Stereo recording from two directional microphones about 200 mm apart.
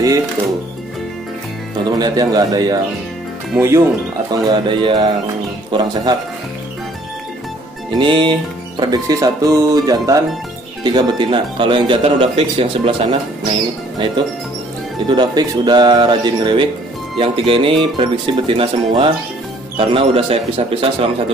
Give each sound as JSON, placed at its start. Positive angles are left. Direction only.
{"t": 2.0, "sound": "speech", "side_deg": -20}
{"t": 3.5, "sound": "music", "side_deg": -15}
{"t": 4.3, "sound": "speech", "side_deg": -20}
{"t": 8.0, "sound": "music", "side_deg": -25}
{"t": 10.8, "sound": "speech", "side_deg": -20}
{"t": 13.9, "sound": "speech", "side_deg": -25}